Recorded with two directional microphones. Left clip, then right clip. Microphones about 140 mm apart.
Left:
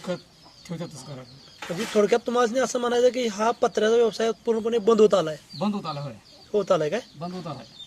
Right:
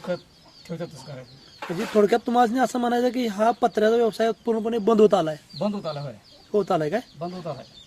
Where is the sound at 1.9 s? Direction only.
60° right (ahead or behind).